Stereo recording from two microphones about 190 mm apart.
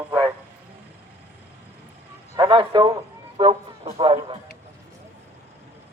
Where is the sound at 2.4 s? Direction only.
25° right (ahead or behind).